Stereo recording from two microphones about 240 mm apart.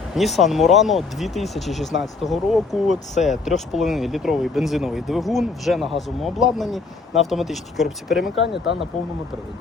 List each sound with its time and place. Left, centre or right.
0.2 s speech: centre
8.4 s speech: left